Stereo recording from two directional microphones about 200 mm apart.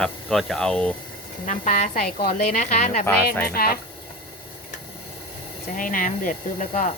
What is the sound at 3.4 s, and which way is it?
Speech, 50° left (ahead or behind).